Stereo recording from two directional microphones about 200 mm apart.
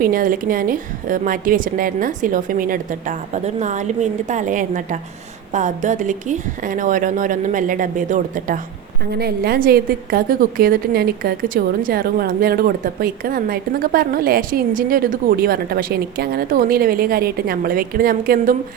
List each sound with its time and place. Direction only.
0.0 s a woman's voice: 45° right (ahead or behind)
9.1 s a woman's voice: 50° right (ahead or behind)